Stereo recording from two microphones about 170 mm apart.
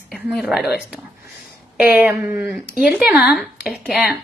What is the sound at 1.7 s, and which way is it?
Speech, 10° right (ahead or behind).